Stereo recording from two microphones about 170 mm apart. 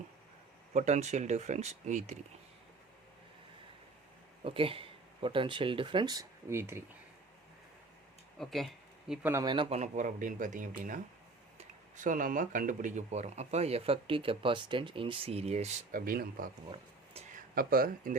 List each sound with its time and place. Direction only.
0.7 s speech: 40° right (ahead or behind)
4.4 s speech: 30° right (ahead or behind); by 6.8 s 15° right (ahead or behind)
8.4 s a sound: centre (ahead or behind)
9.2 s speech: 20° right (ahead or behind); by 15.7 s 40° right (ahead or behind)
15.9 s speech: 55° right (ahead or behind)